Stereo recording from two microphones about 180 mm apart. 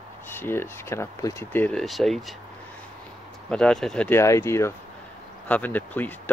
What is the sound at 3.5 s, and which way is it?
Speech, 5° left (ahead or behind).